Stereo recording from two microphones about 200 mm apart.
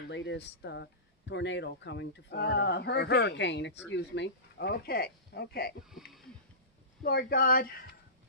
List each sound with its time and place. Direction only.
0.1 s speech: 60° left (ahead or behind)
5.9 s speech: centre (ahead or behind)
7.0 s speech: 45° left (ahead or behind)